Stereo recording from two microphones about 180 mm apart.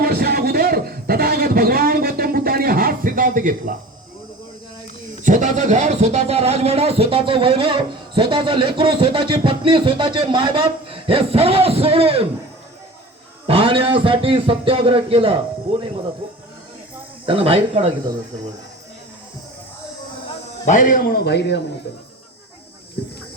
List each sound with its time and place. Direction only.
0.0 s a sound: 60° right (ahead or behind)
5.2 s speech: 45° right (ahead or behind)
13.5 s a man's voice: 30° right (ahead or behind)
17.2 s speech: 30° right (ahead or behind)
20.7 s a man's voice: 45° left (ahead or behind); by 21.6 s 70° left (ahead or behind)